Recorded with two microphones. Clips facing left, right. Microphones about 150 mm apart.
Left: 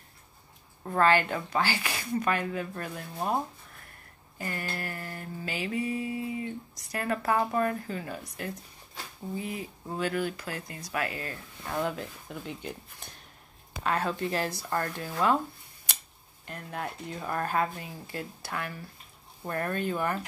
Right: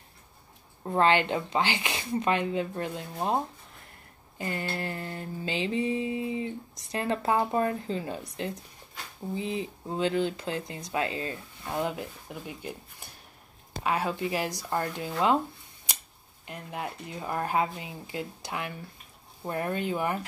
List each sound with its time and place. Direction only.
0.8 s mantra: 20° right (ahead or behind)
4.4 s mantra: 20° right (ahead or behind)
13.0 s a sound: 10° right (ahead or behind)
13.8 s speech: 10° right (ahead or behind)
16.4 s speech: 15° right (ahead or behind)